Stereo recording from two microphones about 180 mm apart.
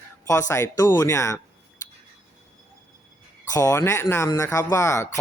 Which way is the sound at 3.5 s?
15° left (ahead or behind).